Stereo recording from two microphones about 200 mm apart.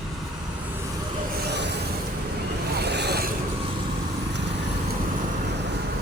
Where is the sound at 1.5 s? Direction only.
60° right (ahead or behind).